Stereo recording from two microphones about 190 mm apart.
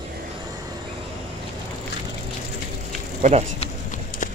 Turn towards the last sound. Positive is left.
turn(degrees=-35)  # may be behind; listen again after turning